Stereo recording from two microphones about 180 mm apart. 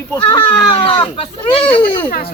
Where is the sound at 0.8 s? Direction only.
30° left (ahead or behind).